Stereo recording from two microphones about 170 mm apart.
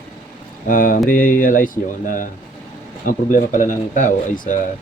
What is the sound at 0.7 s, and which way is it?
Mantra, 55° left (ahead or behind).